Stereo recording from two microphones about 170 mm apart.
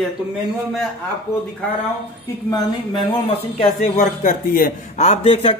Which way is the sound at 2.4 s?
25° left (ahead or behind).